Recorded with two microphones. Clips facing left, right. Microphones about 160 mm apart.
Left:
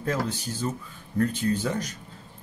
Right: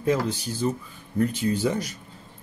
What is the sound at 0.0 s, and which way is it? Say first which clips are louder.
A man's voice: right 4 dB; 10° right (ahead or behind).